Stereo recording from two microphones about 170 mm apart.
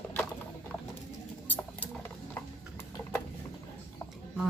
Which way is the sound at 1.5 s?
10° left (ahead or behind).